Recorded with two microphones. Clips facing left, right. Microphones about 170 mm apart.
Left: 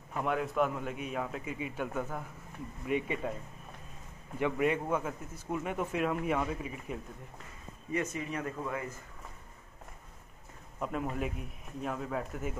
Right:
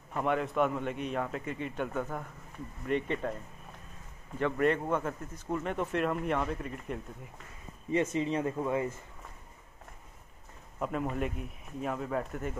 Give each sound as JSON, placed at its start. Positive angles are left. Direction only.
{"t": 0.1, "sound": "a man's voice", "side_deg": 0}
{"t": 4.4, "sound": "a man's voice", "side_deg": 10}
{"t": 7.9, "sound": "speech", "side_deg": -25}
{"t": 10.8, "sound": "a man's voice", "side_deg": 0}